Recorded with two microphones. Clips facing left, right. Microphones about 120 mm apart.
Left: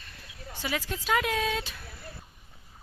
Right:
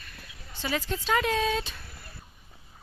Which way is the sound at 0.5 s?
10° left (ahead or behind).